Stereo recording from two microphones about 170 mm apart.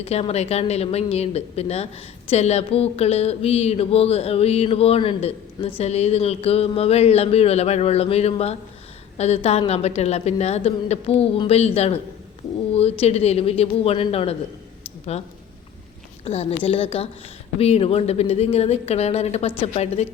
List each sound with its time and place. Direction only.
0.0 s speech: 35° left (ahead or behind)